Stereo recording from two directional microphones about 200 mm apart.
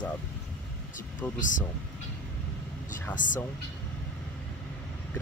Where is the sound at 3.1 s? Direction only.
40° left (ahead or behind).